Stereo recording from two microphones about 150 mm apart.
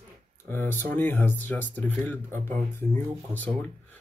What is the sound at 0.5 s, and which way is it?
Speech, 15° left (ahead or behind).